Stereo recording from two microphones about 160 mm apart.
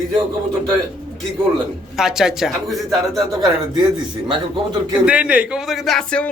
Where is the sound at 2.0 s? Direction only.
5° right (ahead or behind).